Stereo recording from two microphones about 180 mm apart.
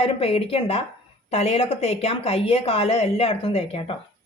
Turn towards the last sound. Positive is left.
turn(degrees=30)  # may be behind; listen again after turning